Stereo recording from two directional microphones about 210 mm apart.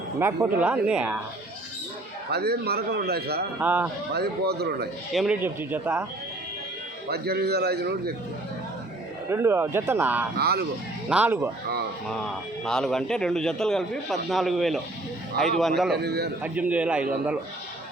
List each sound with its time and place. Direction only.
0.2 s speech: 10° right (ahead or behind)
2.3 s a man's voice: 50° right (ahead or behind)
3.6 s speech: 10° right (ahead or behind)
4.1 s a man's voice: 50° right (ahead or behind)
5.1 s speech: 5° right (ahead or behind)
7.1 s a man's voice: 50° right (ahead or behind)
9.3 s speech: 10° right (ahead or behind)
10.3 s a man's voice: 50° right (ahead or behind)
11.1 s speech: 10° right (ahead or behind)
12.6 s a man's voice: centre (ahead or behind)
16.0 s a man's voice: 50° right (ahead or behind)
16.4 s speech: 5° right (ahead or behind)